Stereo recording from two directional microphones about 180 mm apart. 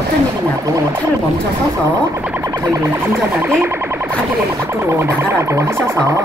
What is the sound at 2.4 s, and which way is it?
Music, 15° right (ahead or behind).